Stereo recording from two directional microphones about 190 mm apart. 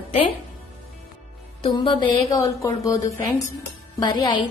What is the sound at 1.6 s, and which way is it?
A woman's voice, 25° left (ahead or behind).